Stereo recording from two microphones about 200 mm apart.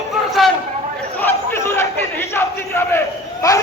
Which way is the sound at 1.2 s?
10° left (ahead or behind).